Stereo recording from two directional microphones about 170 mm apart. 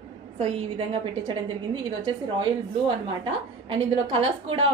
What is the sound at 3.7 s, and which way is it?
Speech, 30° right (ahead or behind).